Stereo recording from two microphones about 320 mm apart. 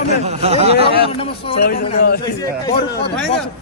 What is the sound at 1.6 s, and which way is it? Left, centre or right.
Speech, left.